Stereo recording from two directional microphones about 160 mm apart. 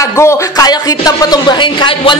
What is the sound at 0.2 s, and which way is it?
Speech, 20° left (ahead or behind).